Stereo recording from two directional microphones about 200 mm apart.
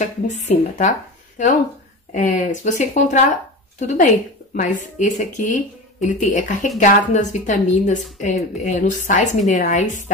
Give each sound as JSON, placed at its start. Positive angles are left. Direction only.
{"t": 0.0, "sound": "speech", "side_deg": 35}
{"t": 2.1, "sound": "speech", "side_deg": 40}